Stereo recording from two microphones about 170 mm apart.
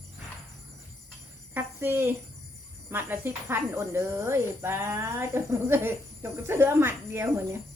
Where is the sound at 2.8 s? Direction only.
10° right (ahead or behind).